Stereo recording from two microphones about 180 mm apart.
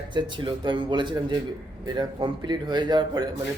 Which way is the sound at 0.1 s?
25° right (ahead or behind).